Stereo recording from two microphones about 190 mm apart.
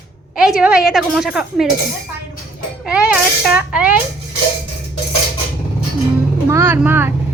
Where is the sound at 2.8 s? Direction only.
5° right (ahead or behind).